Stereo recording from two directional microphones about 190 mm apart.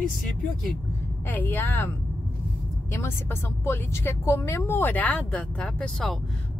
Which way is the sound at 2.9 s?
10° left (ahead or behind).